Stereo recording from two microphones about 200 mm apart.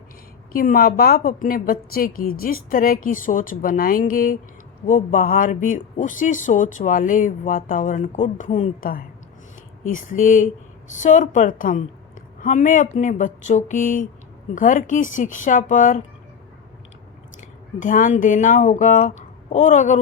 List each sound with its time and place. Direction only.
0.5 s a woman's voice: 45° left (ahead or behind)
17.7 s speech: 40° left (ahead or behind)